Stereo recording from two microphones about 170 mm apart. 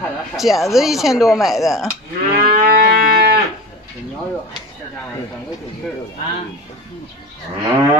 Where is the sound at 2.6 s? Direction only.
65° right (ahead or behind).